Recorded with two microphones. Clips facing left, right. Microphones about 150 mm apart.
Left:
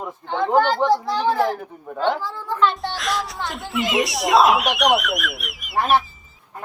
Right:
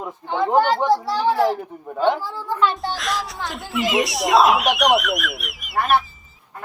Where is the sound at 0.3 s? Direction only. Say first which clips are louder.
Right 1 dB; 5° right (ahead or behind).